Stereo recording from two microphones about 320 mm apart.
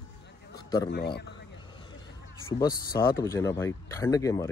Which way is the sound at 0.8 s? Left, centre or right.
Left.